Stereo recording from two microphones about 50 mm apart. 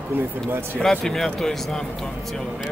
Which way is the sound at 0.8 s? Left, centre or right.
Centre.